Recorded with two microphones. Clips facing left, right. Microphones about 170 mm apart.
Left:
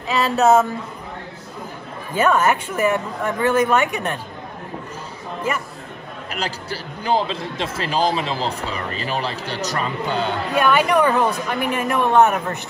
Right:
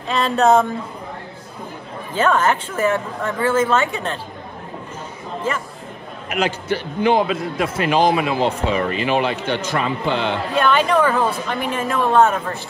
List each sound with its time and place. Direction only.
0.1 s speech: 5° left (ahead or behind)
2.1 s a woman's voice: 10° left (ahead or behind)
6.3 s a man's voice: 35° left (ahead or behind)
10.5 s a woman's voice: 10° left (ahead or behind)